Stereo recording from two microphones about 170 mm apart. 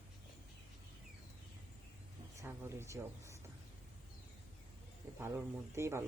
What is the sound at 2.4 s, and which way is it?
Speech, 15° right (ahead or behind).